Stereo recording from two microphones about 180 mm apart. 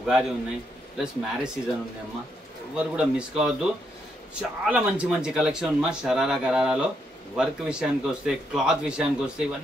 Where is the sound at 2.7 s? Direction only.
5° right (ahead or behind).